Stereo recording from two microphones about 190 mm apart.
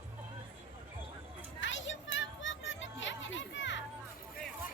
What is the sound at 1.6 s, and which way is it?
Music, 80° left.